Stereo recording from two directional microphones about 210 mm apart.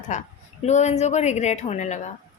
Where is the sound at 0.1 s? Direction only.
35° left (ahead or behind).